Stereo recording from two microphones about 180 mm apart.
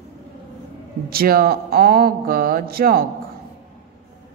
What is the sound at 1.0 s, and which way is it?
Speech, 55° right (ahead or behind).